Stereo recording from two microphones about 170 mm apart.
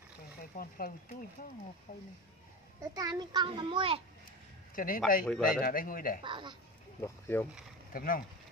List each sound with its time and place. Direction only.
0.4 s speech: 60° left (ahead or behind)
2.8 s a child's voice: 20° right (ahead or behind)
4.7 s a man's voice: 55° left (ahead or behind)
5.2 s speech: centre (ahead or behind)
5.6 s speech: 55° left (ahead or behind)
6.2 s a child's voice: 30° right (ahead or behind)
7.0 s speech: 15° left (ahead or behind)
7.9 s speech: 60° left (ahead or behind)